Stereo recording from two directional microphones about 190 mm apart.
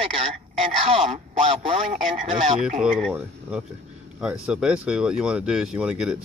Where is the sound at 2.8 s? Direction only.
5° right (ahead or behind).